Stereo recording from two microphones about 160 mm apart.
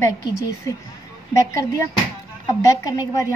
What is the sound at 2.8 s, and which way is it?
Speech, 20° left (ahead or behind).